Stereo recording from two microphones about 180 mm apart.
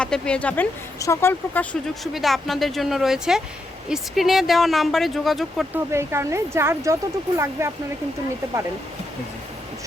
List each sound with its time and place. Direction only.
0.0 s speech: 5° left (ahead or behind)
2.1 s speech: centre (ahead or behind)
5.7 s speech: 15° right (ahead or behind)